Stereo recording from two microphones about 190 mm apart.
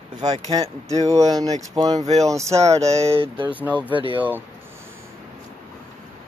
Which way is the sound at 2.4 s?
35° right (ahead or behind).